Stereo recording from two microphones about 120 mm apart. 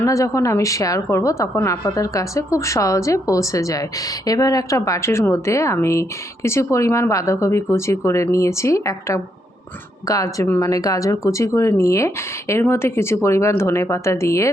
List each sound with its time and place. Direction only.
0.0 s a woman's voice: 25° left (ahead or behind)